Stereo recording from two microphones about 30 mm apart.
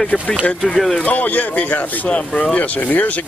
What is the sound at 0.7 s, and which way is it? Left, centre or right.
Speech, centre.